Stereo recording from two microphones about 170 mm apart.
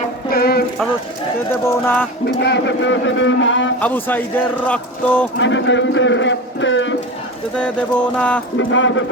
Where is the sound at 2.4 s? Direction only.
90° left.